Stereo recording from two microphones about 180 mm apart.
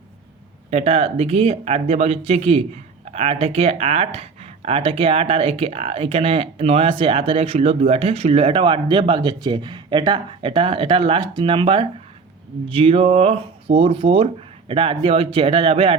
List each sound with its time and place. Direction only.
0.7 s speech: 35° right (ahead or behind)